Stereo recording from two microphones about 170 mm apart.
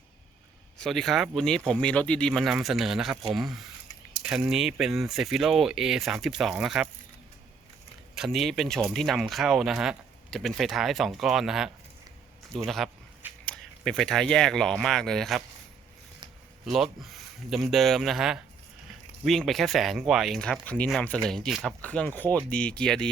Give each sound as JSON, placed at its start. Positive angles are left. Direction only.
{"t": 0.8, "sound": "speech", "side_deg": 0}
{"t": 8.1, "sound": "speech", "side_deg": 0}
{"t": 16.6, "sound": "speech", "side_deg": 0}